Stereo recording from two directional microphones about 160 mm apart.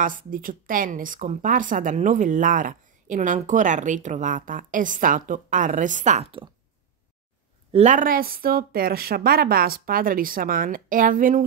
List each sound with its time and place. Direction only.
0.0 s speech: 60° right (ahead or behind)
7.7 s speech: 50° right (ahead or behind)